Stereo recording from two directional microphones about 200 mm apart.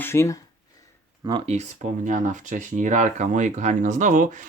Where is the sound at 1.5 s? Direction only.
35° right (ahead or behind).